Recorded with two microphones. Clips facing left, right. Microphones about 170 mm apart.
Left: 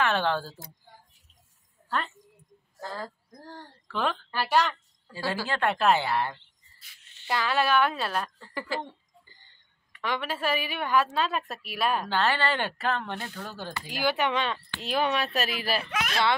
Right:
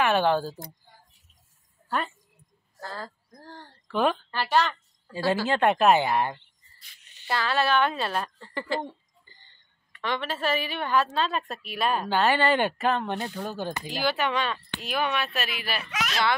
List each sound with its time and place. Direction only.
0.0 s speech: 15° right (ahead or behind)
2.8 s speech: 20° left (ahead or behind)
3.8 s a woman's voice: 15° right (ahead or behind)
4.3 s a woman's voice: 10° left (ahead or behind)
5.1 s speech: 15° right (ahead or behind)
7.0 s a sound: 15° right (ahead or behind)
7.2 s a woman's voice: 15° left (ahead or behind)
9.9 s a woman's voice: 10° left (ahead or behind)
12.0 s speech: 15° right (ahead or behind)
13.8 s a child's voice: 15° left (ahead or behind); by 15.9 s 35° left (ahead or behind)
15.9 s speech: 55° left (ahead or behind)